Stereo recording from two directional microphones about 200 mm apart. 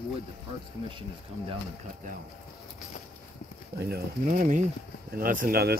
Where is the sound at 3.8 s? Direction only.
50° right (ahead or behind).